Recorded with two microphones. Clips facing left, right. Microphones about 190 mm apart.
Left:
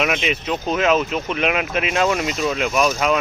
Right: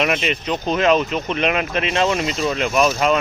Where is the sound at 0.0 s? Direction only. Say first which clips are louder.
Right 1 dB; centre (ahead or behind).